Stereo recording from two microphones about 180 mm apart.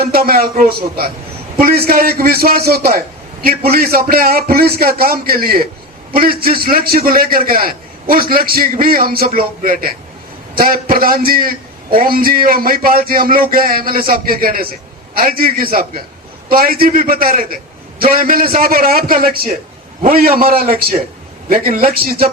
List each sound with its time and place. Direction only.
0.0 s a man's voice: 55° right (ahead or behind)